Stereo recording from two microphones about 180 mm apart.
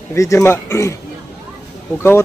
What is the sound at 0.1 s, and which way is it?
Speech, 15° left (ahead or behind).